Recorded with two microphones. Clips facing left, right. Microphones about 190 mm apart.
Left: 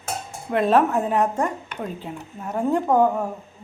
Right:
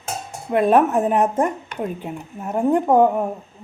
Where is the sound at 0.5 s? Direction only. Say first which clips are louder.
Right 3 dB; 15° right (ahead or behind).